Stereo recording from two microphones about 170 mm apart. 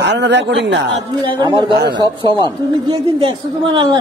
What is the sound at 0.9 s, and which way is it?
A woman's voice, 30° right (ahead or behind).